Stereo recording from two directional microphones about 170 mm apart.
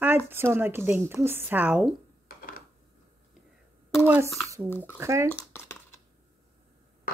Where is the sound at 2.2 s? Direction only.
55° left (ahead or behind).